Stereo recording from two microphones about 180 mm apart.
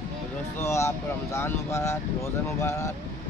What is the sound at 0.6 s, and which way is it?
Speech, 15° left (ahead or behind).